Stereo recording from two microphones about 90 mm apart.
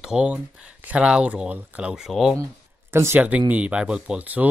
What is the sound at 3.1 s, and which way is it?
Speech, 15° right (ahead or behind).